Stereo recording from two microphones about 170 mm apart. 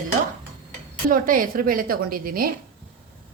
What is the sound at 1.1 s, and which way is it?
Speech, 55° right (ahead or behind).